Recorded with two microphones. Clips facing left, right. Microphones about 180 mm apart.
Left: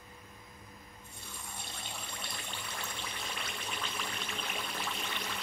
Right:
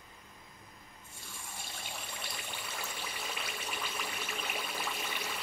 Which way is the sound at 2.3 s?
5° right (ahead or behind).